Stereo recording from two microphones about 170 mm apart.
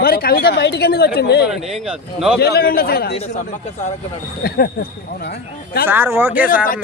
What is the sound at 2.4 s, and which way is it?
Speech, 65° left (ahead or behind).